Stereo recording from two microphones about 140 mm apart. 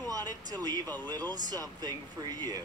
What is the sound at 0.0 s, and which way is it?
Speech, 25° right (ahead or behind).